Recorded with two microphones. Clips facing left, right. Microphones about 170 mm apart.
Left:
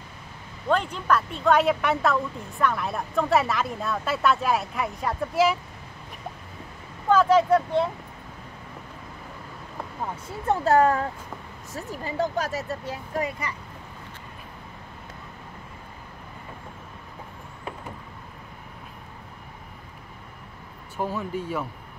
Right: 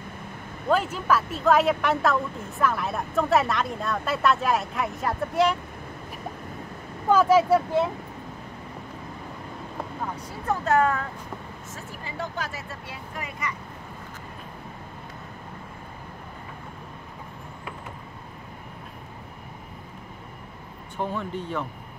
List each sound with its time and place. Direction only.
0.7 s speech: 5° right (ahead or behind)
7.1 s speech: 10° right (ahead or behind)
10.1 s speech: 30° left (ahead or behind)
21.0 s speech: 5° left (ahead or behind)